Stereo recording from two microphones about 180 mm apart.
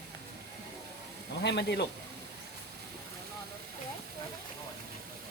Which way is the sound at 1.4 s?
70° left (ahead or behind).